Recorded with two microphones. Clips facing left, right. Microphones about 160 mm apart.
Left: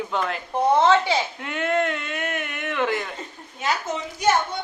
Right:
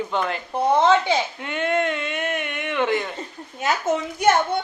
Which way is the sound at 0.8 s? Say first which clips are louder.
Right 1 dB; 20° right (ahead or behind).